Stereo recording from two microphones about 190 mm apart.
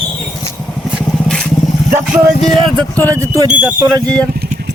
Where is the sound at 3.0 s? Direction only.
15° right (ahead or behind).